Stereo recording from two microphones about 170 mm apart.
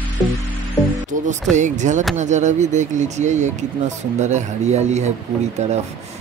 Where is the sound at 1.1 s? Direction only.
45° right (ahead or behind).